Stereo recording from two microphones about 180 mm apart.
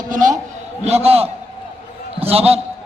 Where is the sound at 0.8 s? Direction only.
35° right (ahead or behind).